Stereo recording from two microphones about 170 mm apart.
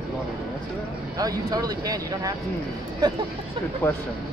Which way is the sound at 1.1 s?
20° right (ahead or behind).